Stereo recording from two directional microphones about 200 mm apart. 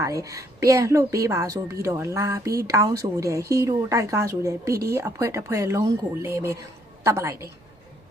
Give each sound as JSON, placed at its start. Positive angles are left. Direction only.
{"t": 0.0, "sound": "a woman's voice", "side_deg": -15}